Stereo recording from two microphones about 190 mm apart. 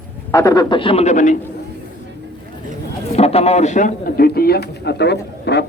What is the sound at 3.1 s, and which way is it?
A man's voice, 30° left (ahead or behind).